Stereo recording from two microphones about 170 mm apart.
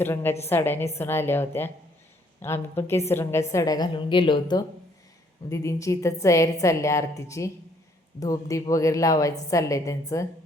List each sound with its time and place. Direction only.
0.0 s a woman's voice: 10° left (ahead or behind)